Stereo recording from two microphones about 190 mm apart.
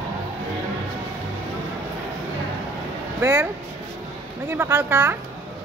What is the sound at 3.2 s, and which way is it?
Speech, 10° right (ahead or behind).